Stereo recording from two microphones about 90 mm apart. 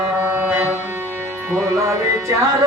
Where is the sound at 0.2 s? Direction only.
20° right (ahead or behind).